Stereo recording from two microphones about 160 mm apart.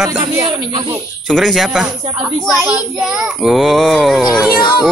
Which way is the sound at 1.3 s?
Centre (ahead or behind).